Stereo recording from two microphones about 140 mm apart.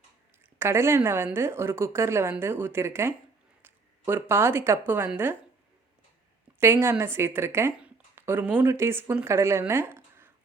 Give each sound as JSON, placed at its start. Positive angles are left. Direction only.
{"t": 0.6, "sound": "a woman's voice", "side_deg": -20}
{"t": 6.6, "sound": "a woman's voice", "side_deg": -20}